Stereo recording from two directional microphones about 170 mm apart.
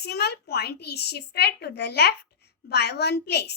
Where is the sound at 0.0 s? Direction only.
75° left (ahead or behind).